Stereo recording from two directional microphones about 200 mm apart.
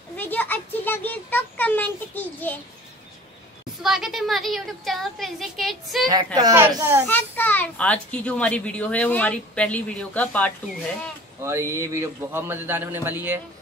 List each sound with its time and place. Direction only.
0.2 s a child's voice: 10° left (ahead or behind)
3.8 s a woman's voice: centre (ahead or behind)
6.0 s a child's voice: 20° right (ahead or behind)
7.1 s a child's voice: 10° left (ahead or behind)
11.4 s speech: 15° right (ahead or behind)